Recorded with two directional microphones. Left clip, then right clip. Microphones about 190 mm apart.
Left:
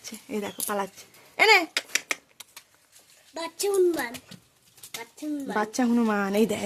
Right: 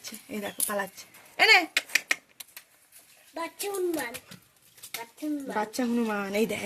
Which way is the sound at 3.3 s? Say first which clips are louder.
Left 7 dB; 30° left (ahead or behind).